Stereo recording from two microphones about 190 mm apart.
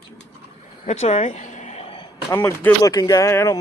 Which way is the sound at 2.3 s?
15° left (ahead or behind).